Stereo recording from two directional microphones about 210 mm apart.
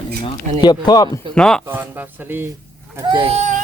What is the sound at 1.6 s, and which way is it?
Speech, 10° right (ahead or behind).